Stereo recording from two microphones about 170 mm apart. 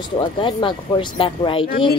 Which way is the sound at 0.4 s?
25° left (ahead or behind).